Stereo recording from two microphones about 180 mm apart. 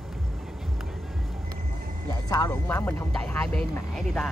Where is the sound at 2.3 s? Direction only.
15° left (ahead or behind).